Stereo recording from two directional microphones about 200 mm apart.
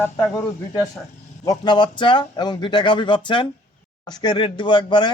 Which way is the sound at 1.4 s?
20° left (ahead or behind).